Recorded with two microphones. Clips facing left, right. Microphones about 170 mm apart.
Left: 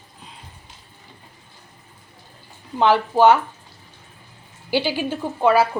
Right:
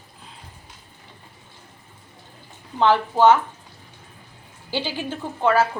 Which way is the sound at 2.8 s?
10° left (ahead or behind).